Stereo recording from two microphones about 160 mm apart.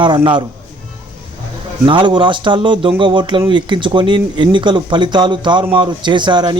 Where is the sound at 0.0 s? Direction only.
30° right (ahead or behind).